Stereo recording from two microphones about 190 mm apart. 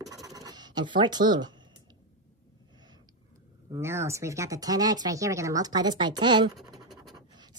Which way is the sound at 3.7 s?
15° right (ahead or behind).